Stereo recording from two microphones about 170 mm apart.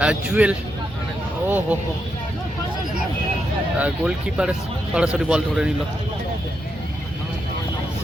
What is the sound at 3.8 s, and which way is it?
A man's voice, 5° right (ahead or behind).